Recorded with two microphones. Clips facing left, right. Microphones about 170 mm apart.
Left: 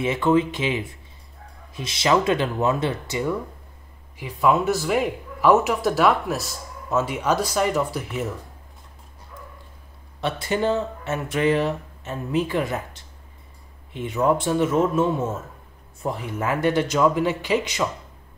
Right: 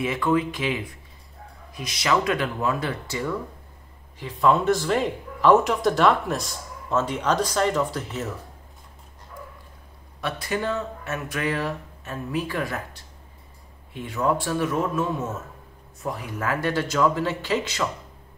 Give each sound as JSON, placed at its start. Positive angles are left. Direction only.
{"t": 0.0, "sound": "speech", "side_deg": 25}
{"t": 4.2, "sound": "speech", "side_deg": 10}
{"t": 10.2, "sound": "speech", "side_deg": 25}